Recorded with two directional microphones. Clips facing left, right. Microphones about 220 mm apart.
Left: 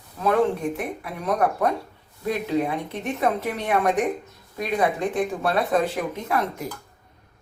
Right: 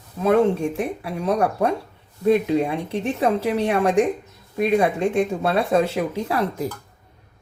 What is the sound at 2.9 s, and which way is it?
Speech, 30° right (ahead or behind).